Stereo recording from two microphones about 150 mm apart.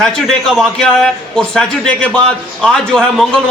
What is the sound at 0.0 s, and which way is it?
A man's voice, 5° left (ahead or behind).